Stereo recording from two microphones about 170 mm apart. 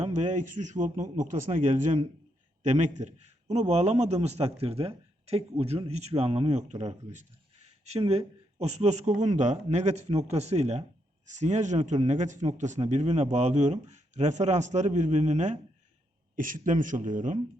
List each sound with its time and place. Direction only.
0.0 s speech: 40° right (ahead or behind)